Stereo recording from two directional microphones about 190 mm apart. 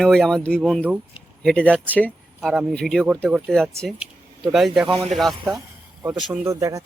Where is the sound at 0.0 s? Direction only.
Centre (ahead or behind).